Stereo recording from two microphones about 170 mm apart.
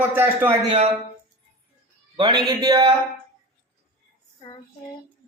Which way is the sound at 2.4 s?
25° right (ahead or behind).